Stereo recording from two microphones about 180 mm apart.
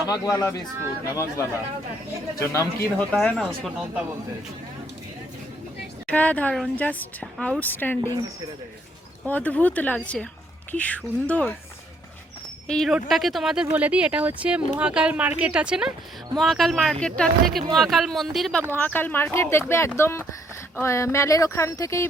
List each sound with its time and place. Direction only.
0.1 s speech: 20° left (ahead or behind)
2.4 s speech: 15° left (ahead or behind); by 4.0 s centre (ahead or behind)
6.1 s speech: 5° left (ahead or behind)
9.2 s speech: 10° left (ahead or behind)
12.6 s speech: centre (ahead or behind)